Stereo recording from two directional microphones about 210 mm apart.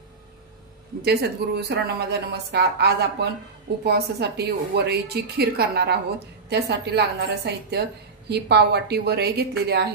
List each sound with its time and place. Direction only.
1.0 s a woman's voice: 50° right (ahead or behind)